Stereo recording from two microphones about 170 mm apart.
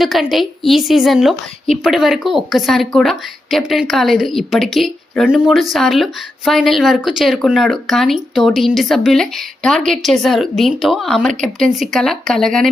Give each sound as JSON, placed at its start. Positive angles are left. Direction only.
{"t": 0.0, "sound": "speech", "side_deg": 0}